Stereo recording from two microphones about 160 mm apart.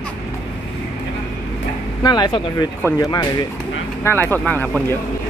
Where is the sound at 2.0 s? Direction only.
25° left (ahead or behind).